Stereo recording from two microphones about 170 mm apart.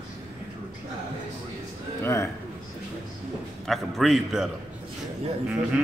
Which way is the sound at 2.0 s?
15° left (ahead or behind).